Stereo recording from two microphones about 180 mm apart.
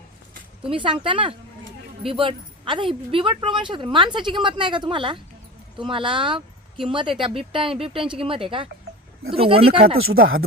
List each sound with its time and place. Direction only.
0.6 s speech: 30° right (ahead or behind)